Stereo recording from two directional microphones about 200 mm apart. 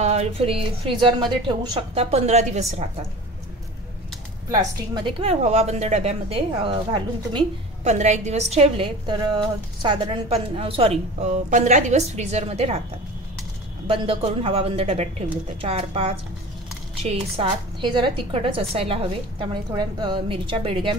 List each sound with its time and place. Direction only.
0.0 s a woman's voice: 30° right (ahead or behind)
4.5 s a woman's voice: 20° right (ahead or behind)
13.8 s a woman's voice: 25° right (ahead or behind)